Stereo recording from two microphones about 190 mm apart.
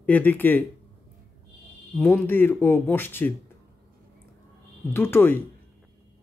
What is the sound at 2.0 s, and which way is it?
Speech, 10° left (ahead or behind).